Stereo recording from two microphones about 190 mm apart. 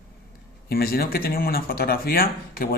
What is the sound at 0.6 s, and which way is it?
Speech, 50° left (ahead or behind).